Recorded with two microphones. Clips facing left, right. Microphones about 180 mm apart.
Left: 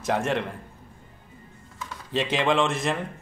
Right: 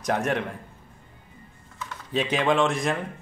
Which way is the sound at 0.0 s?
Centre (ahead or behind).